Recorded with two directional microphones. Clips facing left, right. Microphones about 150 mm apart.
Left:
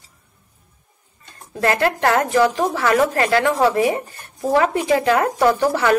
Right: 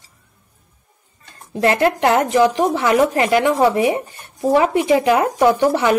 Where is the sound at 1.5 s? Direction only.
20° right (ahead or behind).